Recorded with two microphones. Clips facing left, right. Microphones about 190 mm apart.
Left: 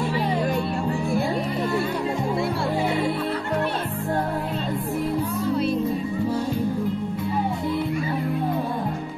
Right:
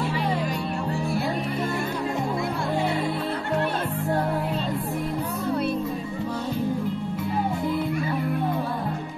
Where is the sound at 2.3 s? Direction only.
30° left (ahead or behind).